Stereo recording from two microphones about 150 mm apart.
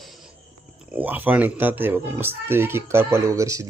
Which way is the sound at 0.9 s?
10° right (ahead or behind).